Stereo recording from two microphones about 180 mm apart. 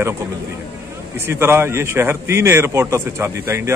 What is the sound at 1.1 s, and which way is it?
A man's voice, 15° right (ahead or behind).